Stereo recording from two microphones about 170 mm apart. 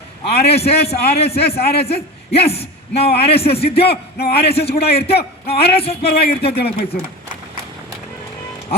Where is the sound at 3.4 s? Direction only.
35° left (ahead or behind).